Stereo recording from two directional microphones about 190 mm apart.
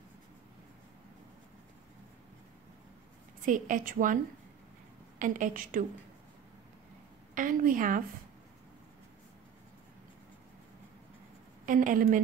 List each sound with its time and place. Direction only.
3.4 s a woman's voice: 45° right (ahead or behind)
5.2 s a woman's voice: 45° right (ahead or behind)
7.3 s a woman's voice: 45° right (ahead or behind)
11.6 s a woman's voice: 45° right (ahead or behind)